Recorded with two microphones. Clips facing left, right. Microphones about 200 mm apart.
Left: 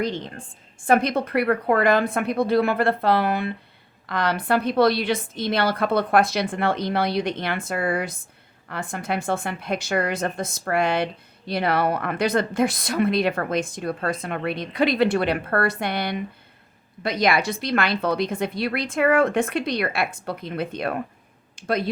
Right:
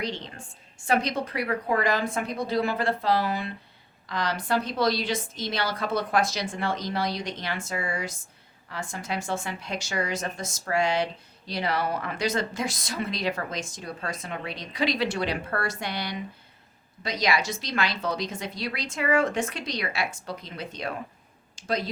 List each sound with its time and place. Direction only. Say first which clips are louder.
0.0 s a woman's voice: left 6 dB; 50° left (ahead or behind)